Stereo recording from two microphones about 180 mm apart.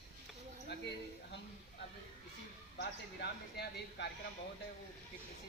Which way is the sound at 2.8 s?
70° left (ahead or behind).